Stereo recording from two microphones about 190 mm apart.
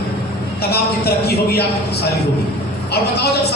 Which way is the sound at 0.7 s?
55° left (ahead or behind).